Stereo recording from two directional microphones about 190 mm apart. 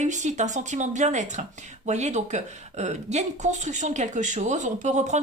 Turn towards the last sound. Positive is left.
turn(degrees=-40)  # may be behind; listen again after turning